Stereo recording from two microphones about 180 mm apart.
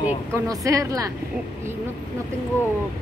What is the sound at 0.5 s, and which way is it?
Speech, 20° right (ahead or behind).